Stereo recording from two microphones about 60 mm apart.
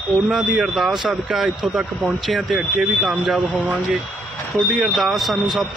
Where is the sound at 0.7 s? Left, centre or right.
Centre.